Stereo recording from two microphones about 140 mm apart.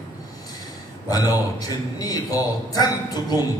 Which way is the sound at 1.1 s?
25° left (ahead or behind).